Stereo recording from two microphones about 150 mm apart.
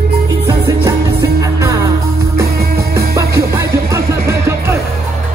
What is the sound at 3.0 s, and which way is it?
Music, 20° right (ahead or behind).